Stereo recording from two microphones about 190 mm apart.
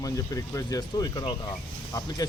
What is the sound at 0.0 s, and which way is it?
Speech, 15° left (ahead or behind).